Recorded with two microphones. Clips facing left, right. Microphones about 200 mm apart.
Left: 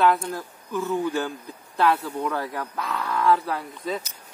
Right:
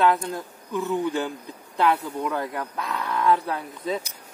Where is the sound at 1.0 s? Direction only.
20° right (ahead or behind).